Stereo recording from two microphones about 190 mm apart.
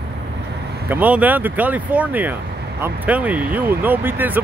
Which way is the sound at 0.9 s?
10° right (ahead or behind).